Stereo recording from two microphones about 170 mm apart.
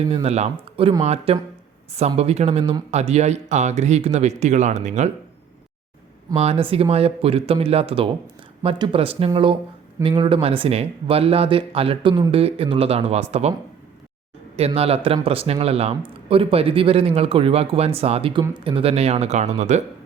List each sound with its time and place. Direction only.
0.1 s speech: 35° right (ahead or behind)
6.3 s speech: 35° right (ahead or behind)
14.5 s speech: 35° right (ahead or behind)